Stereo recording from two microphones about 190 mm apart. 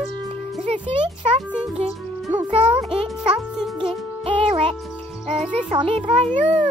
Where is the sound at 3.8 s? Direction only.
30° right (ahead or behind).